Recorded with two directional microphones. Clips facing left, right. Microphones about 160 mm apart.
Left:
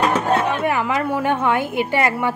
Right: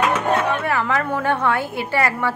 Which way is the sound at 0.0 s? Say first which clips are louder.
Left 1 dB; 30° left (ahead or behind).